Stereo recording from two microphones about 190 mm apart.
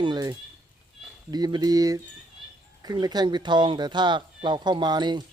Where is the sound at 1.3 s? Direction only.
20° right (ahead or behind).